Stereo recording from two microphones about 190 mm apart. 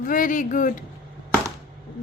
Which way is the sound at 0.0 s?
45° left (ahead or behind).